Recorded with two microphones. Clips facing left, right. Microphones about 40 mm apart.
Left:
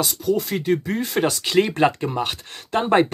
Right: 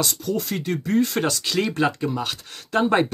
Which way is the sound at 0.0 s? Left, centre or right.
Centre.